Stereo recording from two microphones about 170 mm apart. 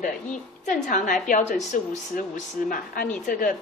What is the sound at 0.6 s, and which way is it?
Speech, 45° left (ahead or behind).